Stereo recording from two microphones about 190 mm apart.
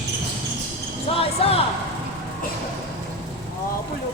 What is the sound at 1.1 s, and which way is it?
Basketball bounce, 30° left (ahead or behind).